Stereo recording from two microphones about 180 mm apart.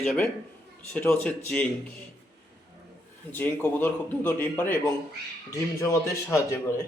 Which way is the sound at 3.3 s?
10° left (ahead or behind).